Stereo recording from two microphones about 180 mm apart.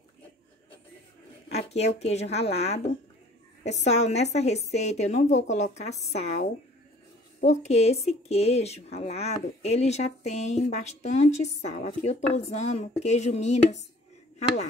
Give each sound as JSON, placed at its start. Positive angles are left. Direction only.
{"t": 1.5, "sound": "a sound", "side_deg": 35}
{"t": 2.0, "sound": "speech", "side_deg": 35}
{"t": 7.4, "sound": "speech", "side_deg": 35}